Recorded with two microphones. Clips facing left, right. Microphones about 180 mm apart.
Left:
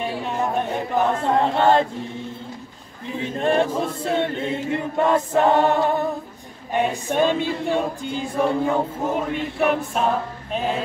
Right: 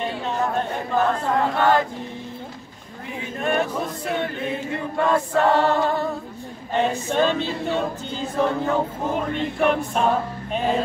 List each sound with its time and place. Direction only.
0.3 s speech: 15° left (ahead or behind)
3.2 s choir: 30° left (ahead or behind)
6.7 s a capella: 15° left (ahead or behind)
10.5 s music: centre (ahead or behind)